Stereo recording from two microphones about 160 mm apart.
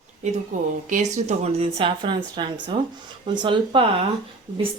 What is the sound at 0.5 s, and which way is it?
Speech, 50° right (ahead or behind).